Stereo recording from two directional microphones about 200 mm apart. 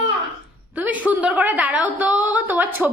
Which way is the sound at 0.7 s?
5° right (ahead or behind).